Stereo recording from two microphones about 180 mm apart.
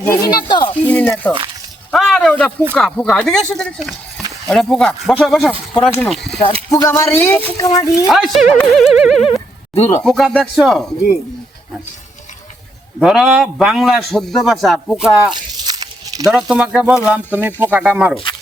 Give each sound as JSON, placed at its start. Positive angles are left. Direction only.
{"t": 0.1, "sound": "speech", "side_deg": 20}
{"t": 0.9, "sound": "a man's voice", "side_deg": 10}
{"t": 6.7, "sound": "speech", "side_deg": 15}
{"t": 8.1, "sound": "a man's voice", "side_deg": 0}
{"t": 13.0, "sound": "a man's voice", "side_deg": -5}
{"t": 15.3, "sound": "a sound", "side_deg": -20}
{"t": 16.3, "sound": "speech", "side_deg": -5}